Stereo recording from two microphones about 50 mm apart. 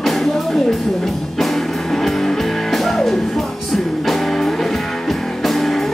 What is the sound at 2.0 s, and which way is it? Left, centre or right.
Music, centre.